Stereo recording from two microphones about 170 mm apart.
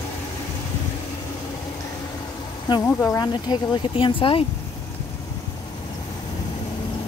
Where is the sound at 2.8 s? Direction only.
15° left (ahead or behind); by 4.4 s 30° left (ahead or behind).